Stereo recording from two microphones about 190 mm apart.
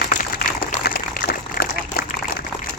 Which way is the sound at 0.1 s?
50° left (ahead or behind).